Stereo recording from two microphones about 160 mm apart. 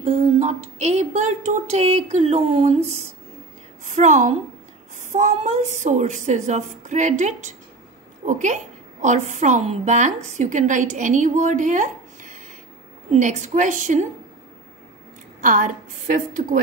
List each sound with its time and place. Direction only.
0.0 s a woman's voice: 40° right (ahead or behind)
15.4 s a woman's voice: 55° right (ahead or behind)